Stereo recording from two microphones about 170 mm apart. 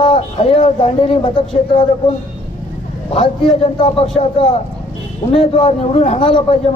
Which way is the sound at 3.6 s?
35° left (ahead or behind).